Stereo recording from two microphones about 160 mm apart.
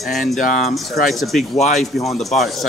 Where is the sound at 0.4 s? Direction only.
50° left (ahead or behind).